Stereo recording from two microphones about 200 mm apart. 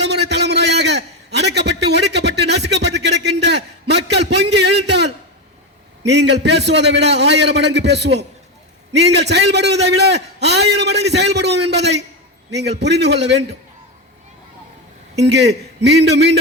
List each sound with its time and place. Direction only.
0.1 s a sound: 60° right (ahead or behind)
6.1 s a man's voice: 60° right (ahead or behind)
15.2 s a man's voice: 55° right (ahead or behind)